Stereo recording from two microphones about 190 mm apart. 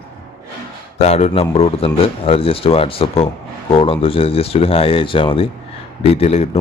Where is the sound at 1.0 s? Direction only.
35° left (ahead or behind).